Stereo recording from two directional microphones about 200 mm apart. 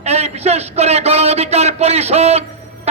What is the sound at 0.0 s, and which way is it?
A man's voice, 30° right (ahead or behind).